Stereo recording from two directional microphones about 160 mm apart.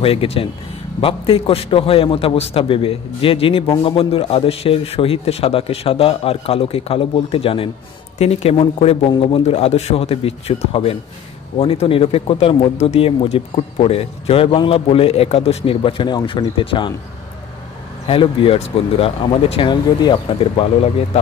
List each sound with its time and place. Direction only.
0.0 s speech: 35° left (ahead or behind)
18.0 s speech: 35° left (ahead or behind)